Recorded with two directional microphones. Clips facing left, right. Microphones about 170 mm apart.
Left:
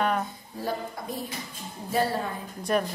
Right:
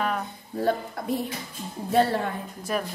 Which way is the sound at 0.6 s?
60° right (ahead or behind).